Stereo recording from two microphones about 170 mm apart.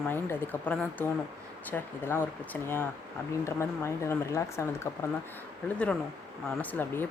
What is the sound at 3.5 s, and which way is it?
A woman's voice, 15° left (ahead or behind).